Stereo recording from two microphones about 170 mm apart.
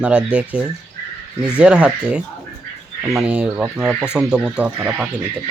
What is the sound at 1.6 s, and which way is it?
Speech, 5° right (ahead or behind).